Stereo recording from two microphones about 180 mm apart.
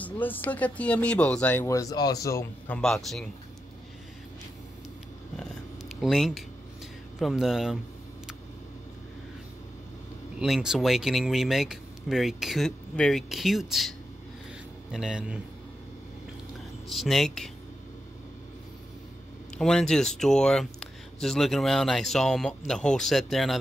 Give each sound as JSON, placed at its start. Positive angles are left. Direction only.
{"t": 0.0, "sound": "speech", "side_deg": 10}
{"t": 2.8, "sound": "speech", "side_deg": 0}
{"t": 5.4, "sound": "a sound", "side_deg": 0}
{"t": 7.2, "sound": "speech", "side_deg": 0}
{"t": 10.4, "sound": "speech", "side_deg": -5}
{"t": 16.9, "sound": "speech", "side_deg": 0}
{"t": 19.6, "sound": "speech", "side_deg": 5}